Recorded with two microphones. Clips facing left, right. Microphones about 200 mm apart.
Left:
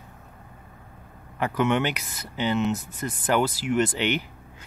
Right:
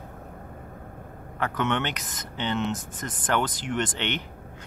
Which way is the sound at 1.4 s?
10° left (ahead or behind).